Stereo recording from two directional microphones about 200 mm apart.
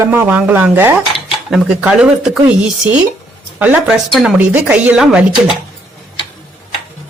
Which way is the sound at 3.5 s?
5° right (ahead or behind).